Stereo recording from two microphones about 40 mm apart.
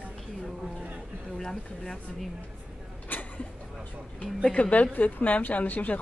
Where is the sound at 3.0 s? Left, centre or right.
Left.